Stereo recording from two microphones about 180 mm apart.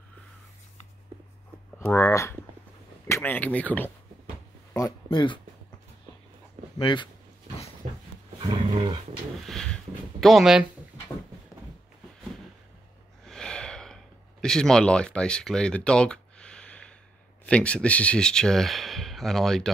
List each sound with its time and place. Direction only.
1.8 s speech: 10° left (ahead or behind)
4.7 s speech: 20° left (ahead or behind)
6.8 s speech: 25° left (ahead or behind)
7.8 s dog: 40° right (ahead or behind)
9.4 s a sound: centre (ahead or behind)
10.2 s speech: centre (ahead or behind)
13.2 s gasp: 5° left (ahead or behind)
14.4 s speech: 5° left (ahead or behind)